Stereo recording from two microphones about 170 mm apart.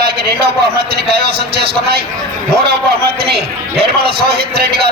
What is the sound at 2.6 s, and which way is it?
A man's voice, 70° right (ahead or behind).